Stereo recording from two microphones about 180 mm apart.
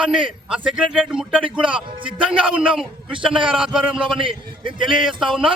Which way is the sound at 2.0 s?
30° right (ahead or behind).